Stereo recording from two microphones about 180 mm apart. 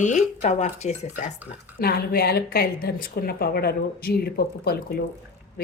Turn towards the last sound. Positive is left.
turn(degrees=60)  # may be behind; listen again after turning